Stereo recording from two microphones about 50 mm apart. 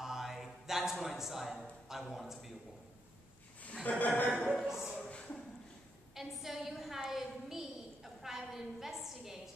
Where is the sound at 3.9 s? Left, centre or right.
Left.